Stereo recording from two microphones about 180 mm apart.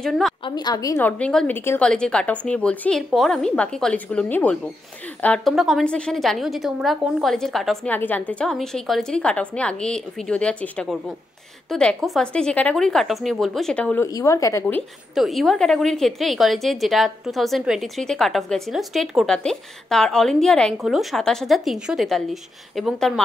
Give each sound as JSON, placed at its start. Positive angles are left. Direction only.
{"t": 0.0, "sound": "a woman's voice", "side_deg": 0}
{"t": 0.5, "sound": "a woman's voice", "side_deg": 25}
{"t": 14.0, "sound": "a woman's voice", "side_deg": 20}
{"t": 14.8, "sound": "a woman's voice", "side_deg": 0}